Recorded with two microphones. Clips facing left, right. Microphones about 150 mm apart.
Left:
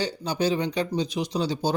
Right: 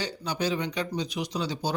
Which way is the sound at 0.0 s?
30° left (ahead or behind).